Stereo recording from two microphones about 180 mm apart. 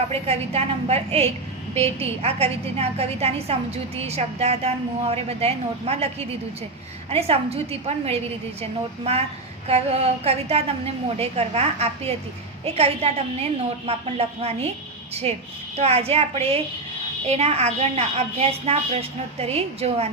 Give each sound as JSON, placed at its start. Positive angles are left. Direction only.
{"t": 0.1, "sound": "a woman's voice", "side_deg": -35}
{"t": 9.6, "sound": "a woman's voice", "side_deg": -35}